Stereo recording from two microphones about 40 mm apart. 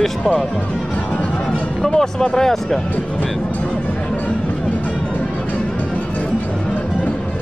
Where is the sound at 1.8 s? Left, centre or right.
Centre.